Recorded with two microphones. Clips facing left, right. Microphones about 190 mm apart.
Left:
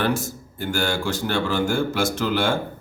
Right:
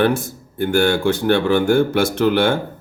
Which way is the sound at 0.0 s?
55° right (ahead or behind).